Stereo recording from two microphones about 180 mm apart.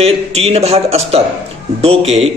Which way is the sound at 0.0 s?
35° right (ahead or behind).